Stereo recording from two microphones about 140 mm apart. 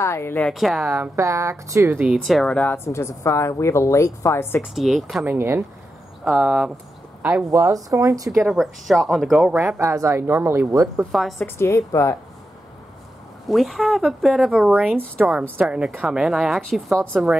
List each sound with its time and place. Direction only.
0.0 s speech: 20° left (ahead or behind)
0.5 s a woman's voice: centre (ahead or behind)
0.8 s speech: 15° right (ahead or behind)
2.0 s speech: 5° right (ahead or behind); by 4.6 s 15° left (ahead or behind)
4.7 s a woman's voice: centre (ahead or behind)
5.2 s speech: 15° right (ahead or behind)
6.2 s a woman's voice: centre (ahead or behind)
7.4 s speech: 25° right (ahead or behind)
8.5 s a woman's voice: centre (ahead or behind)
9.6 s speech: 20° right (ahead or behind)
11.1 s a woman's voice: centre (ahead or behind)
11.4 s speech: 20° left (ahead or behind)
13.5 s a woman's voice: centre (ahead or behind)